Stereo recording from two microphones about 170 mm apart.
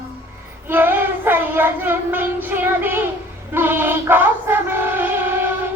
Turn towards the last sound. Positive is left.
turn(degrees=-15)  # may be behind; listen again after turning